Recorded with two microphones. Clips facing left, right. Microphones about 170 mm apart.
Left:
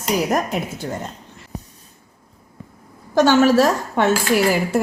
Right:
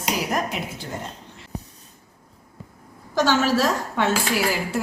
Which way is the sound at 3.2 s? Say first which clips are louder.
Left 6 dB; 55° left (ahead or behind).